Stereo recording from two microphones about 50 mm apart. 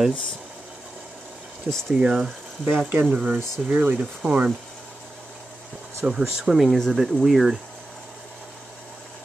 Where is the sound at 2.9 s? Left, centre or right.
Right.